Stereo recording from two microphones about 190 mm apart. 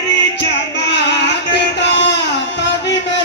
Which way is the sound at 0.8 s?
65° left (ahead or behind).